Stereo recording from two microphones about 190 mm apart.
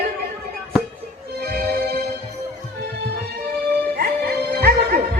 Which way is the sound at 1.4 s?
55° right (ahead or behind).